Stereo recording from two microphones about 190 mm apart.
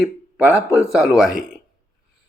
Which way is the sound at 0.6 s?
15° left (ahead or behind).